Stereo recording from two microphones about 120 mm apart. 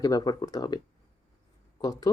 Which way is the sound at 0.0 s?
30° left (ahead or behind).